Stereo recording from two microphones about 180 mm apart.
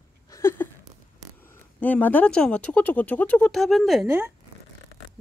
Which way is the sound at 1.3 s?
10° left (ahead or behind).